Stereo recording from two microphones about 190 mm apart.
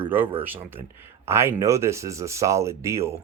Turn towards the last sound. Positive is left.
turn(degrees=-15)  # may be behind; listen again after turning